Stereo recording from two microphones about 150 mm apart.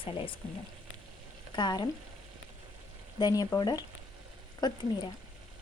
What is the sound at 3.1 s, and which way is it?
A woman's voice, 25° left (ahead or behind).